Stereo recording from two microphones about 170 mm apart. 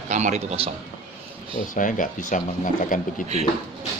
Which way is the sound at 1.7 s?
50° left (ahead or behind).